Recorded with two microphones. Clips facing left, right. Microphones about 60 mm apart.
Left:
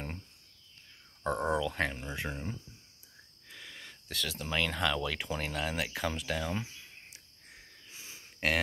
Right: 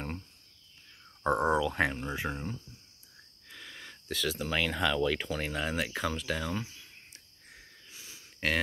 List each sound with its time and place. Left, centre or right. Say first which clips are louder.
1.2 s speech: right 4 dB; centre
3.4 s speech: right 2 dB; centre
7.9 s a sound: left 1 dB; left
8.4 s speech: even; centre